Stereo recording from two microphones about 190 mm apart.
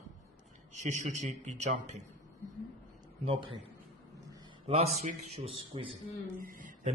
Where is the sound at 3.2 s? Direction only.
25° right (ahead or behind).